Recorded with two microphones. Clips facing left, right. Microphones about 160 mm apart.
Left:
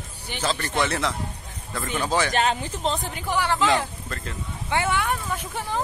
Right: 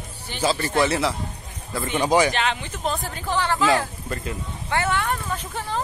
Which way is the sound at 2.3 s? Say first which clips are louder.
Left 2 dB; 40° left (ahead or behind).